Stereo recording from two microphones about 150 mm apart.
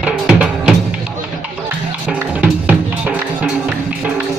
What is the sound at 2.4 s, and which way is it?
Music, 10° right (ahead or behind).